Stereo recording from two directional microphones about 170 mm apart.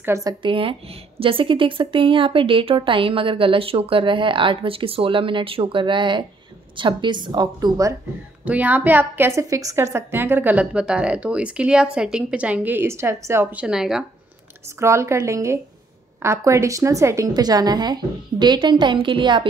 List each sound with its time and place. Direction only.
0.0 s a woman's voice: 20° right (ahead or behind)
8.5 s speech: 10° right (ahead or behind)
14.8 s a woman's voice: 15° right (ahead or behind)